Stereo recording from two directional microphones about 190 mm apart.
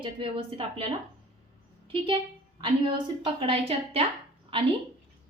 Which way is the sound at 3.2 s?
30° right (ahead or behind).